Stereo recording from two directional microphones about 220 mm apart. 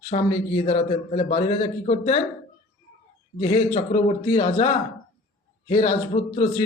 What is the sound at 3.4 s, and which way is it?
A man's voice, 25° left (ahead or behind).